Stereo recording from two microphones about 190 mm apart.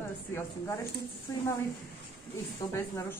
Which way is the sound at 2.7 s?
15° left (ahead or behind).